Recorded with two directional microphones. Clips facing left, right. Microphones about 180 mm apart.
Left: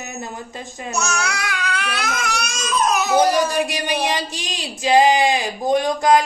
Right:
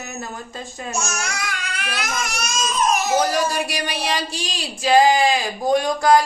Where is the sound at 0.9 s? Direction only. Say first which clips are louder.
Left 4 dB; 65° left (ahead or behind).